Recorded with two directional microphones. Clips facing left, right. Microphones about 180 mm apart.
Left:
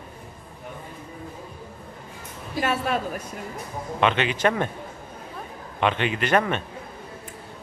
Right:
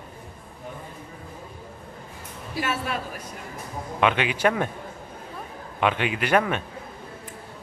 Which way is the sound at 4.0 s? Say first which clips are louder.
Even; 10° right (ahead or behind).